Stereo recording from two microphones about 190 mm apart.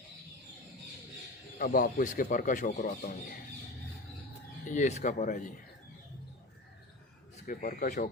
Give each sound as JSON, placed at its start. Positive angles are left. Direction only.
{"t": 1.5, "sound": "speech", "side_deg": 50}
{"t": 4.7, "sound": "speech", "side_deg": 40}
{"t": 7.4, "sound": "speech", "side_deg": 50}